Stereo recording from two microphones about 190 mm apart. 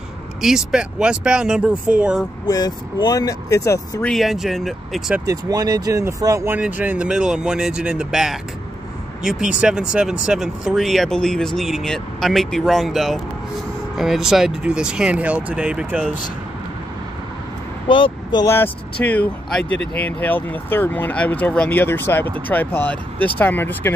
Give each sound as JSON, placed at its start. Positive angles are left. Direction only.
{"t": 0.4, "sound": "speech", "side_deg": 0}
{"t": 2.4, "sound": "speech", "side_deg": 20}
{"t": 4.1, "sound": "speech", "side_deg": 0}
{"t": 5.2, "sound": "speech", "side_deg": -20}
{"t": 17.8, "sound": "speech", "side_deg": 25}